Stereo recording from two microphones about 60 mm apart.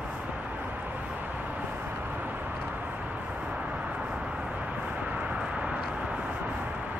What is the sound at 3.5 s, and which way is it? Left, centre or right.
Vehicle, right.